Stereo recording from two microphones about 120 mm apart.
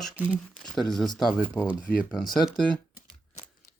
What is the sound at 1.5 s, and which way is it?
Speech, 15° left (ahead or behind).